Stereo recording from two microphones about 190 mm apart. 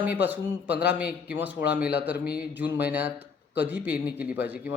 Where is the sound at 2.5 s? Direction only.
10° right (ahead or behind).